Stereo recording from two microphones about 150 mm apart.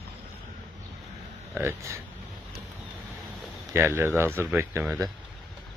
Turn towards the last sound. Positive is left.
turn(degrees=-15)  # may be behind; listen again after turning